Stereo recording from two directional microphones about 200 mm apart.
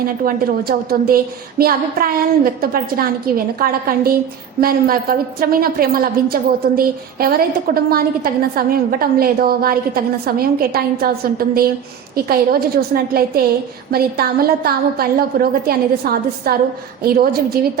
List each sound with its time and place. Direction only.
0.0 s a woman's voice: 45° right (ahead or behind)